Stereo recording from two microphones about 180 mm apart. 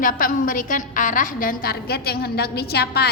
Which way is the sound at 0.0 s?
50° left (ahead or behind).